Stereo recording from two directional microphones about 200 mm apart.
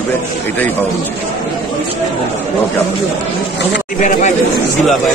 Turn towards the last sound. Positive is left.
turn(degrees=35)  # may be behind; listen again after turning